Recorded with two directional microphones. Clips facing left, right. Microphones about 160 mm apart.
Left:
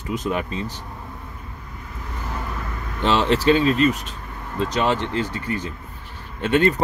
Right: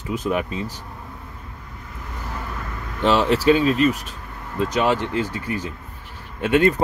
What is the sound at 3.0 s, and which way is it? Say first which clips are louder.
Speech: right 1 dB; 5° right (ahead or behind).